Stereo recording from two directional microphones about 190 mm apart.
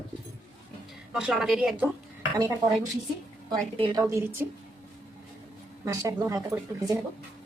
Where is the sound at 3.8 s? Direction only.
15° right (ahead or behind).